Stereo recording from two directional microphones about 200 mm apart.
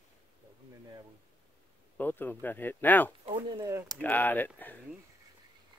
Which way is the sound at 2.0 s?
10° left (ahead or behind).